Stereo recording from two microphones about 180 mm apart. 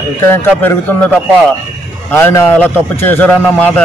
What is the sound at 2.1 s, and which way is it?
Speech, 15° left (ahead or behind).